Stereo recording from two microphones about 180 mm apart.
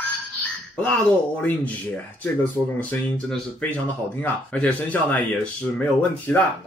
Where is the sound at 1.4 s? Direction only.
10° left (ahead or behind).